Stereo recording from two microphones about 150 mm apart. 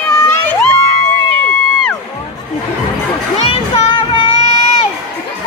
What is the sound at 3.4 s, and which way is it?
Child singing, 35° left (ahead or behind).